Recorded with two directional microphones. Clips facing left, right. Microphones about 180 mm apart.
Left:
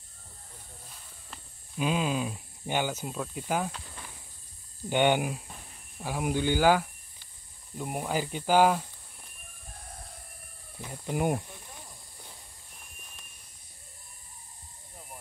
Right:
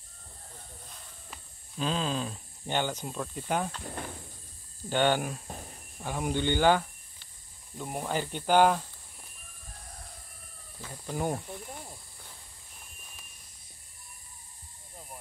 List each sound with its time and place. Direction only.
1.8 s speech: 10° left (ahead or behind)
3.8 s speech: 55° right (ahead or behind)
4.8 s speech: 15° left (ahead or behind)
5.5 s a sound: 40° right (ahead or behind)
6.0 s speech: 5° left (ahead or behind)
10.8 s speech: 15° left (ahead or behind)